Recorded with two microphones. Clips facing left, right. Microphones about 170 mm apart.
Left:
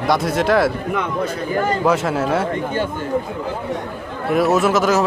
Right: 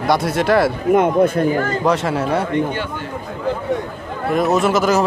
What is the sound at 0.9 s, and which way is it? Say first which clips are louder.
Speech: right 8 dB; 50° right (ahead or behind).